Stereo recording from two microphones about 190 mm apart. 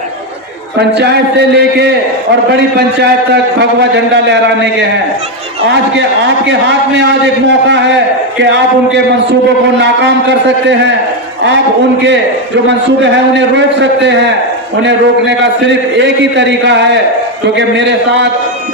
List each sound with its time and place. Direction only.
0.8 s a man's voice: 60° right (ahead or behind)
3.6 s a man's voice: 65° right (ahead or behind)
6.0 s a man's voice: 65° right (ahead or behind)
7.7 s a man's voice: 65° right (ahead or behind)
9.8 s a man's voice: 70° right (ahead or behind)
12.6 s a man's voice: 70° right (ahead or behind)
14.8 s a man's voice: 70° right (ahead or behind)